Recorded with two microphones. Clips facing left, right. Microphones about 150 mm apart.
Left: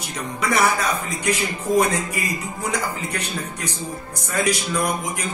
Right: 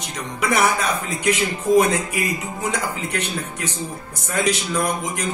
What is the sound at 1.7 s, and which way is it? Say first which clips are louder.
Speech: right 3 dB; 10° right (ahead or behind).